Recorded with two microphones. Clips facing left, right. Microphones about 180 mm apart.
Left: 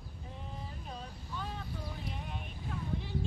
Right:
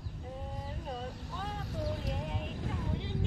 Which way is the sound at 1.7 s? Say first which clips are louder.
Right 6 dB; 90° right.